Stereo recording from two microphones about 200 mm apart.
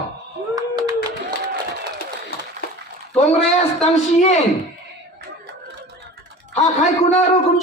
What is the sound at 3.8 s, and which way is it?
Speech, 35° left (ahead or behind).